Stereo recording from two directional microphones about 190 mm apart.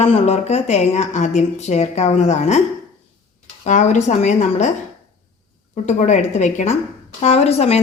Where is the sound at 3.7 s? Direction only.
40° left (ahead or behind).